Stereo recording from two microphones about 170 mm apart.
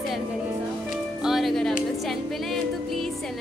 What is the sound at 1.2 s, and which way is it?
Speech, centre (ahead or behind).